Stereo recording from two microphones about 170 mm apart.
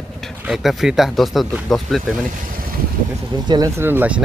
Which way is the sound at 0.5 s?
Centre (ahead or behind).